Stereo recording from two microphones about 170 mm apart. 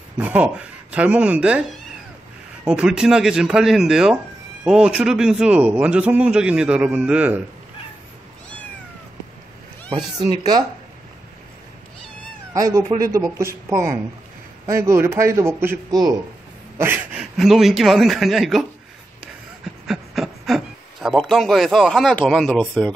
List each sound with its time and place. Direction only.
0.2 s a man's voice: 10° right (ahead or behind)
9.8 s speech: 25° right (ahead or behind)
12.5 s a man's voice: 20° right (ahead or behind)
16.7 s a man's voice: 10° right (ahead or behind); by 22.9 s 5° left (ahead or behind)